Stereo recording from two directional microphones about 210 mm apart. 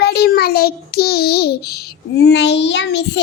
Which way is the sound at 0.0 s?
50° left (ahead or behind).